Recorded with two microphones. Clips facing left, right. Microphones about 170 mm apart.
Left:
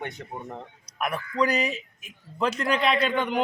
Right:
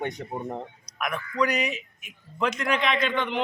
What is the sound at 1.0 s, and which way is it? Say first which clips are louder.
A man's voice: left 1 dB; 35° left (ahead or behind).